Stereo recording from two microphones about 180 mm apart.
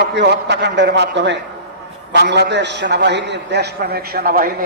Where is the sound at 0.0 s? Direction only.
75° right (ahead or behind).